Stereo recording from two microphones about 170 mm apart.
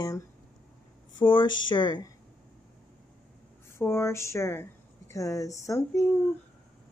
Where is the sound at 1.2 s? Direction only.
25° left (ahead or behind).